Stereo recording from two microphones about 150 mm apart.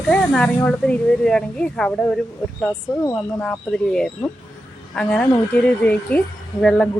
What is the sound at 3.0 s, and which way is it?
Speech, 20° left (ahead or behind).